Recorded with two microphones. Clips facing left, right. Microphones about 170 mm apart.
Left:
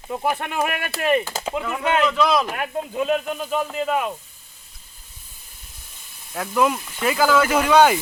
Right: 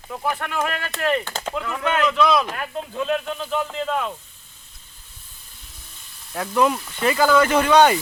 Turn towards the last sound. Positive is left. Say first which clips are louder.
# even
turn(degrees=5)  # may be behind; listen again after turning